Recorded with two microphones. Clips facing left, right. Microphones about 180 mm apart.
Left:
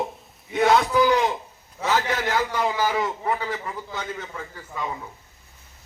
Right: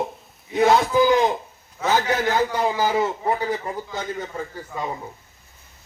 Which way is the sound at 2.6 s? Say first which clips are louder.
Right 3 dB; 30° right (ahead or behind).